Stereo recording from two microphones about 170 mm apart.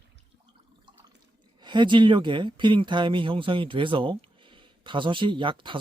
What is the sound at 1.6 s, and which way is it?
Speech, 25° right (ahead or behind).